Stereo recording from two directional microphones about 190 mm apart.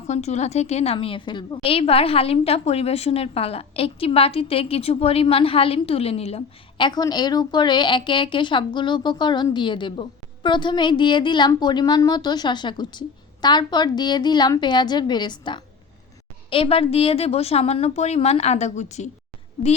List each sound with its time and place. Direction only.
0.1 s a woman's voice: 35° left (ahead or behind)